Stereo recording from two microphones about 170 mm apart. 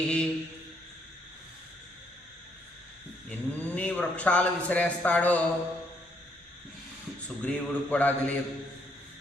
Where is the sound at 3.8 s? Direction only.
10° left (ahead or behind).